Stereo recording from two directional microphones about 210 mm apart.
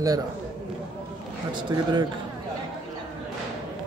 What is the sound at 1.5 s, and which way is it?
Speech, 20° right (ahead or behind).